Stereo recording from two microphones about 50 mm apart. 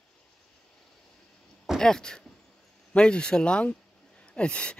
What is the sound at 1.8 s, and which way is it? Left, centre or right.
Speech, centre.